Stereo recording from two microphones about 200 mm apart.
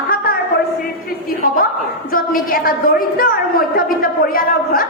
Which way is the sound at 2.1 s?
45° left (ahead or behind).